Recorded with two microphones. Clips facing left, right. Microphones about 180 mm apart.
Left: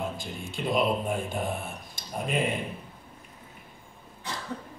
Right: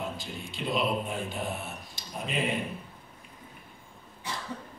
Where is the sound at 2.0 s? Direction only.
50° left (ahead or behind).